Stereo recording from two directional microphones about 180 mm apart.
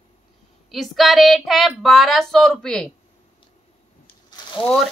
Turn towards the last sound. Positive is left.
turn(degrees=25)  # may be behind; listen again after turning